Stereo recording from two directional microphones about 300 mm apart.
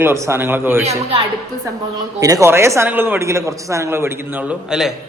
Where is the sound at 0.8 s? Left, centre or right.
Right; by 4.9 s centre.